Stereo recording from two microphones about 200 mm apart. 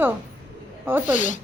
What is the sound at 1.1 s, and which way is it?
Speech, 40° left (ahead or behind).